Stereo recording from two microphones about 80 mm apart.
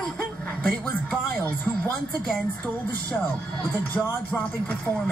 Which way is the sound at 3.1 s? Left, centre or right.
Left.